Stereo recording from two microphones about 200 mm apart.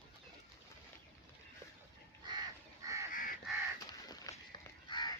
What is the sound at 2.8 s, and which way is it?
Goose, 15° right (ahead or behind).